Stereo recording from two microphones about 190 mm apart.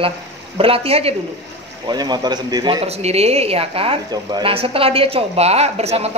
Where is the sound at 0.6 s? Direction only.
30° right (ahead or behind).